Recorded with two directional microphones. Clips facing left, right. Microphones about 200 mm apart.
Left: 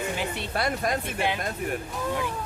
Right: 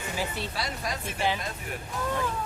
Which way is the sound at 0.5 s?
55° left (ahead or behind).